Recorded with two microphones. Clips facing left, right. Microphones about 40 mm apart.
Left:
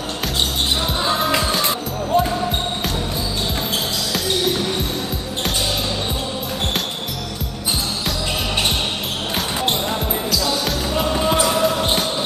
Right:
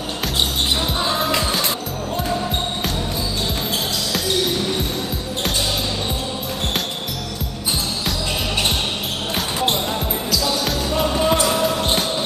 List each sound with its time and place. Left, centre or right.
1.0 s music: centre
4.1 s music: centre
10.3 s basketball bounce: centre